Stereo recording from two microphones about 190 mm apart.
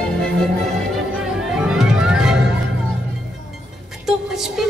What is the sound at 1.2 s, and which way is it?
Music, 5° right (ahead or behind).